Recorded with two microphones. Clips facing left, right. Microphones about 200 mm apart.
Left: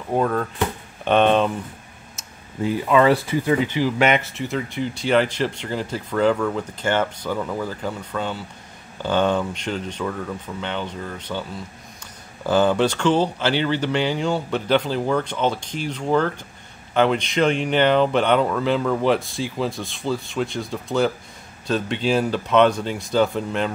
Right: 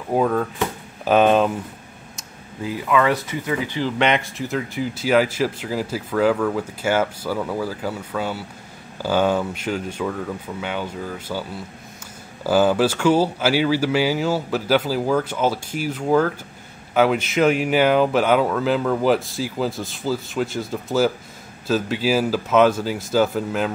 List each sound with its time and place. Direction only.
0.1 s speech: 5° right (ahead or behind)
2.6 s speech: 30° left (ahead or behind)
4.0 s speech: centre (ahead or behind)
12.4 s speech: 5° right (ahead or behind)